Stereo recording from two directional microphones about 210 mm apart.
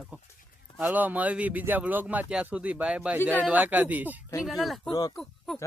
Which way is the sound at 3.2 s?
10° left (ahead or behind).